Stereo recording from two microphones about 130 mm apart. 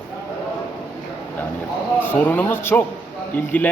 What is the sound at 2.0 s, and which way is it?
Speech, 15° left (ahead or behind).